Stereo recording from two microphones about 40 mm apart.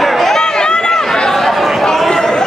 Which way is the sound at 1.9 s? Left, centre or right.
Centre.